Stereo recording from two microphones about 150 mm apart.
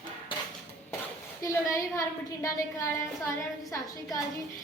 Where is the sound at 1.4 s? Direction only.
20° left (ahead or behind).